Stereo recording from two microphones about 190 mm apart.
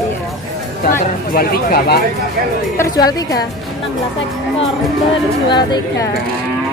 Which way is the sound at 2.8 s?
20° left (ahead or behind).